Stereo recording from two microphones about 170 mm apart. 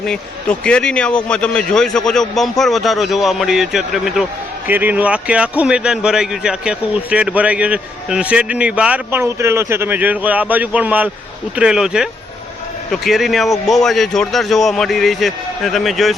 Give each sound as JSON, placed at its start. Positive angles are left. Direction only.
{"t": 0.6, "sound": "a man's voice", "side_deg": 5}